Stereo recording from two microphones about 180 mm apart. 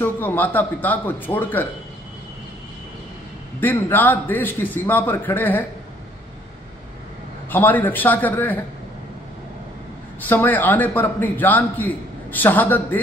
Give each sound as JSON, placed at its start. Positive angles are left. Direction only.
{"t": 0.0, "sound": "a man's voice", "side_deg": 10}
{"t": 3.6, "sound": "a man's voice", "side_deg": 10}
{"t": 7.5, "sound": "a man's voice", "side_deg": 10}
{"t": 10.2, "sound": "a man's voice", "side_deg": 10}